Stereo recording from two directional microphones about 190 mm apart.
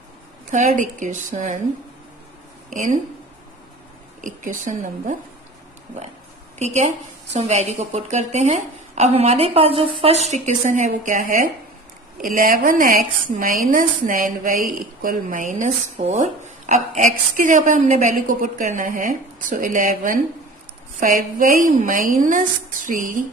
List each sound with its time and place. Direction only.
0.5 s a woman's voice: 40° right (ahead or behind)
2.7 s speech: 40° right (ahead or behind)
4.2 s a woman's voice: 45° right (ahead or behind)
6.6 s a woman's voice: 35° right (ahead or behind)
12.4 s a woman's voice: 45° right (ahead or behind)